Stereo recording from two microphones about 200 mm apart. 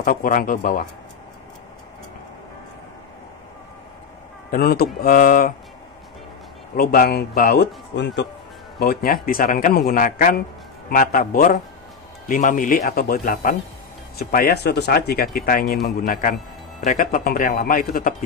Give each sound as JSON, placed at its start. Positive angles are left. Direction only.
{"t": 0.0, "sound": "speech", "side_deg": 45}
{"t": 4.5, "sound": "speech", "side_deg": 50}
{"t": 6.8, "sound": "speech", "side_deg": 50}